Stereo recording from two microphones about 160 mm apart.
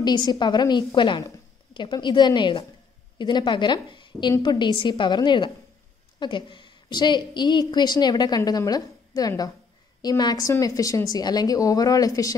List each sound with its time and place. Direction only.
0.0 s a woman's voice: 25° left (ahead or behind)